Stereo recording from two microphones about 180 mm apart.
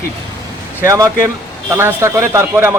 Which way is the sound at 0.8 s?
15° right (ahead or behind).